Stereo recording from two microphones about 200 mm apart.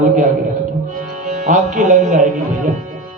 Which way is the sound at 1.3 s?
40° right (ahead or behind).